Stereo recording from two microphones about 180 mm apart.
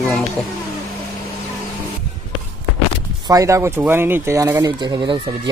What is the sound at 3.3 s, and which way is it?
Speech, 20° right (ahead or behind).